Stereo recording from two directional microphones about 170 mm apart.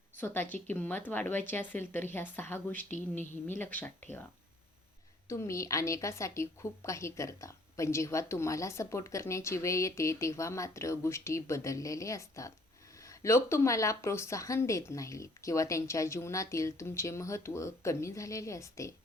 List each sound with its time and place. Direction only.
0.2 s a woman's voice: 10° left (ahead or behind)
5.3 s a woman's voice: 15° left (ahead or behind)